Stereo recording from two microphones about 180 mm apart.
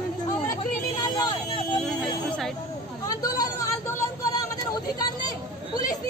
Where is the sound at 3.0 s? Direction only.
20° left (ahead or behind).